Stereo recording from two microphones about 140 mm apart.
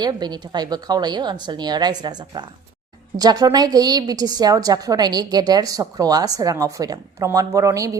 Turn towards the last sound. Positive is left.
turn(degrees=-25)  # may be behind; listen again after turning